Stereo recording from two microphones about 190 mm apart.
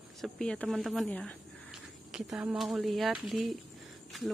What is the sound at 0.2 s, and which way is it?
Speech, 5° left (ahead or behind).